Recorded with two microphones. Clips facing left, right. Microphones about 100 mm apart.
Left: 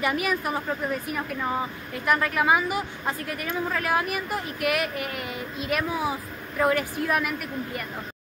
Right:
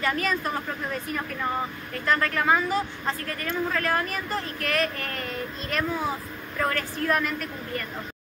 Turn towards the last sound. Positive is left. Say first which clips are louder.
# left 1 dB
turn(degrees=10)  # may be behind; listen again after turning